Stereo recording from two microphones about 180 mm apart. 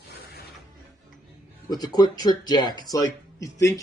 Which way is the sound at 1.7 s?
20° left (ahead or behind).